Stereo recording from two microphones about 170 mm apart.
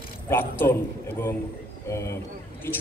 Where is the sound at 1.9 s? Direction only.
15° left (ahead or behind).